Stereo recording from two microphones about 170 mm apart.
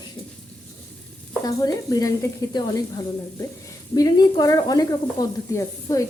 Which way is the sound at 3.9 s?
20° left (ahead or behind).